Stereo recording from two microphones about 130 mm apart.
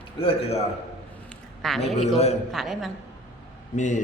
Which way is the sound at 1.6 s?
Centre (ahead or behind).